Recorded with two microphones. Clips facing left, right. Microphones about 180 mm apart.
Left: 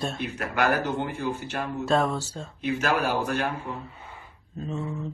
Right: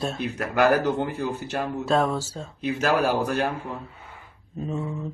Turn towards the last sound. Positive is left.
turn(degrees=-5)  # may be behind; listen again after turning